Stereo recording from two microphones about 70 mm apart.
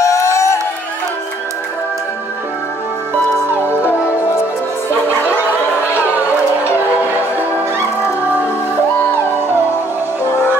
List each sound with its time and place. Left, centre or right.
0.0 s music: left
3.4 s music: right
7.0 s music: right